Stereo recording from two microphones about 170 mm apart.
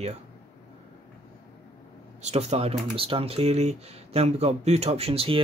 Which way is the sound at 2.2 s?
40° right (ahead or behind).